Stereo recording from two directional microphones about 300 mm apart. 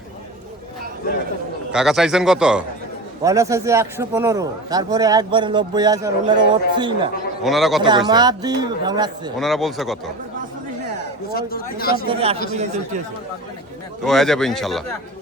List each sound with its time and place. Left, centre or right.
1.7 s a man's voice: centre
7.4 s a man's voice: centre
7.9 s a man's voice: centre
9.4 s a man's voice: centre
11.3 s speech: left
12.0 s speech: centre
14.0 s a man's voice: centre